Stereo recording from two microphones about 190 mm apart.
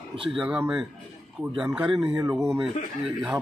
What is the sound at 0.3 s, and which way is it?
Speech, 5° right (ahead or behind).